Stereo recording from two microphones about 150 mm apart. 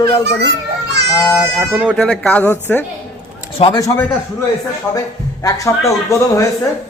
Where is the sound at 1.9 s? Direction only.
5° left (ahead or behind).